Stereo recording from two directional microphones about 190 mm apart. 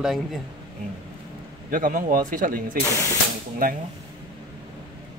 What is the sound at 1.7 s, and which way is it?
Speech, 45° right (ahead or behind).